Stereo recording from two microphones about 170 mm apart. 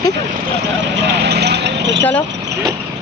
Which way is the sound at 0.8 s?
80° right.